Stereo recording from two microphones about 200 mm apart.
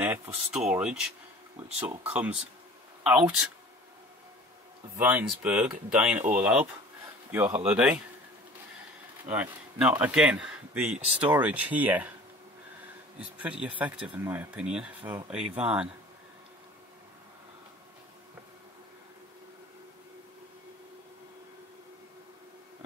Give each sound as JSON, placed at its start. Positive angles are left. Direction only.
{"t": 0.0, "sound": "speech", "side_deg": -10}
{"t": 4.9, "sound": "speech", "side_deg": -10}
{"t": 9.3, "sound": "speech", "side_deg": -5}
{"t": 13.2, "sound": "speech", "side_deg": -5}